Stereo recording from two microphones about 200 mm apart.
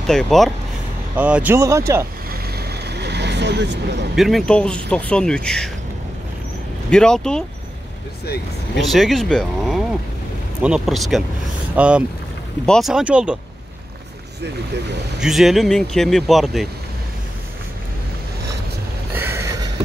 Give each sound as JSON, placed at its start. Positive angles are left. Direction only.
{"t": 0.0, "sound": "speech", "side_deg": 0}
{"t": 2.3, "sound": "vehicle", "side_deg": -50}
{"t": 4.1, "sound": "speech", "side_deg": 0}
{"t": 6.9, "sound": "speech", "side_deg": 5}
{"t": 8.7, "sound": "speech", "side_deg": 0}
{"t": 15.1, "sound": "speech", "side_deg": 0}
{"t": 19.1, "sound": "a sound", "side_deg": -10}